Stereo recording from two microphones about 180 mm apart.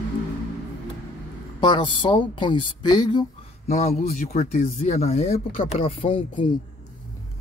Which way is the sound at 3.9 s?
50° left (ahead or behind).